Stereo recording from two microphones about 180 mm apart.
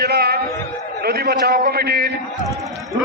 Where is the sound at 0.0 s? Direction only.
65° right (ahead or behind).